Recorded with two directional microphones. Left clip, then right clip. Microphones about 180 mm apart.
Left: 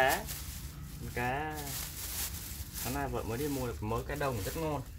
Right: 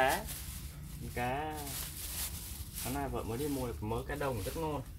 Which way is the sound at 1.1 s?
5° right (ahead or behind).